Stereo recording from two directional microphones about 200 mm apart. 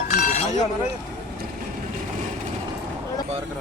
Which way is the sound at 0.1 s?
35° left (ahead or behind).